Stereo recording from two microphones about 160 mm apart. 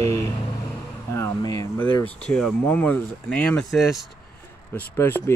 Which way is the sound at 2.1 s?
5° left (ahead or behind).